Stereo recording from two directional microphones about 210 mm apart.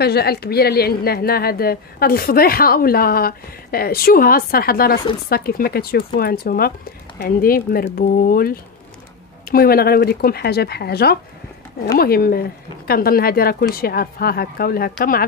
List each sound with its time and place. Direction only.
0.0 s a woman's voice: 50° left (ahead or behind)